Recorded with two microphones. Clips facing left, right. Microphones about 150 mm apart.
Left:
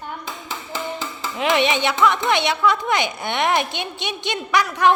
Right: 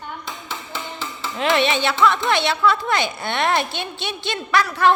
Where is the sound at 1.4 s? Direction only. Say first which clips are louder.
Even; 15° left (ahead or behind).